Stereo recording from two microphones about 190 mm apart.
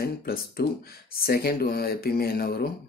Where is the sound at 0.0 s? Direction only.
55° left (ahead or behind).